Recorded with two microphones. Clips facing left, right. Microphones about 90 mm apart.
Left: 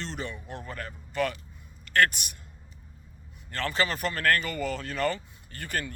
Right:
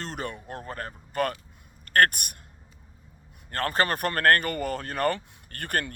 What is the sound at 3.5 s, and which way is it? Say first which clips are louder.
Speech: right 3 dB; 50° right (ahead or behind).